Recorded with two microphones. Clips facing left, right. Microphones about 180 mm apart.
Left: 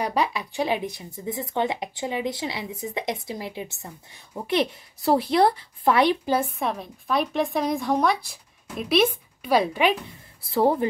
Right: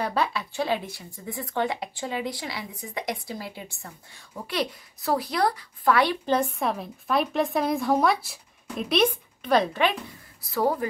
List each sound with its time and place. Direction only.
0.0 s speech: 15° left (ahead or behind)
6.2 s a woman's voice: 10° left (ahead or behind)
10.4 s speech: 25° left (ahead or behind)